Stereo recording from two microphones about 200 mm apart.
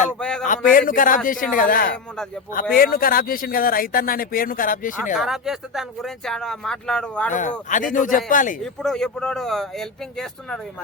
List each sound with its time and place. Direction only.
0.2 s speech: 5° left (ahead or behind)
0.4 s speech: 40° left (ahead or behind)
5.1 s speech: centre (ahead or behind)
7.3 s speech: 40° left (ahead or behind)
8.6 s speech: centre (ahead or behind)